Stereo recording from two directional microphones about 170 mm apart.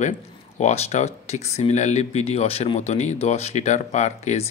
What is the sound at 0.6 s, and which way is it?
Speech, 40° left (ahead or behind).